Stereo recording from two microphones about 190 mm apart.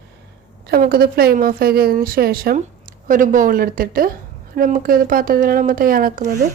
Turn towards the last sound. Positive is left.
turn(degrees=-45)  # may be behind; listen again after turning